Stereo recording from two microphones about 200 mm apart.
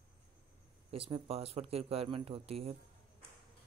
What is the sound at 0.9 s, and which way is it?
Speech, 30° right (ahead or behind).